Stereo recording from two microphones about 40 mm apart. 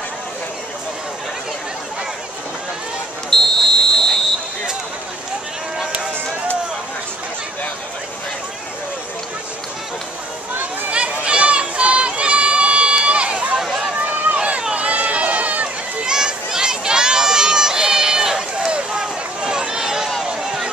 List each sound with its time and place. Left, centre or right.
3.3 s basketball bounce: centre
10.9 s run: right
13.6 s a sound: centre
14.0 s run: right
16.1 s run: centre
18.9 s a sound: centre